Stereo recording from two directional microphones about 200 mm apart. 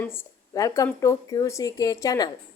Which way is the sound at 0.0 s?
10° left (ahead or behind).